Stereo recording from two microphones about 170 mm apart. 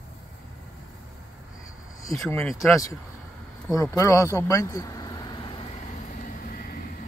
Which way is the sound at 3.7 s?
15° left (ahead or behind).